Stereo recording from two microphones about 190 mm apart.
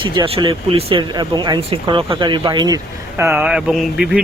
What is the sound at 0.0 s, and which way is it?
Speech, 30° right (ahead or behind).